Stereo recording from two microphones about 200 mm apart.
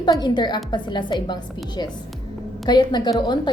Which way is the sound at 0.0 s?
20° left (ahead or behind).